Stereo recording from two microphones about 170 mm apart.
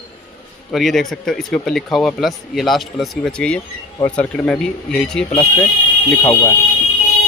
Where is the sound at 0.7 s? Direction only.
Centre (ahead or behind).